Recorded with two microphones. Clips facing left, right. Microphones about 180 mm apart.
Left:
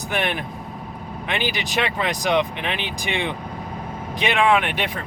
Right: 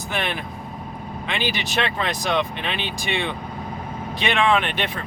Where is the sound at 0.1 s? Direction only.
15° left (ahead or behind).